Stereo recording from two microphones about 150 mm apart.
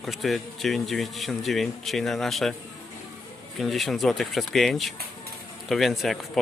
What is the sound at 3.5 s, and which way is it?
Speech, centre (ahead or behind).